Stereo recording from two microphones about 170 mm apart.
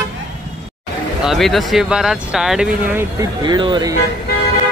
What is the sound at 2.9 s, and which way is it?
Speech, 25° right (ahead or behind).